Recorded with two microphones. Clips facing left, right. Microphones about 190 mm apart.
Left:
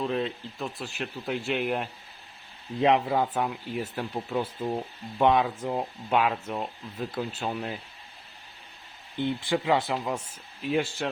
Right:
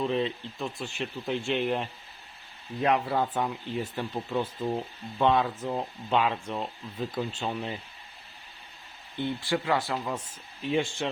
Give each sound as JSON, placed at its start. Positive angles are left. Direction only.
{"t": 0.0, "sound": "speech", "side_deg": 0}
{"t": 9.1, "sound": "speech", "side_deg": 20}